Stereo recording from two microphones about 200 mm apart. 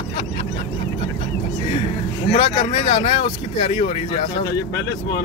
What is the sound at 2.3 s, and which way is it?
Speech, 30° left (ahead or behind).